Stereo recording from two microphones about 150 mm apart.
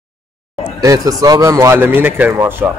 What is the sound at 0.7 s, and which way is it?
Speech, 25° right (ahead or behind).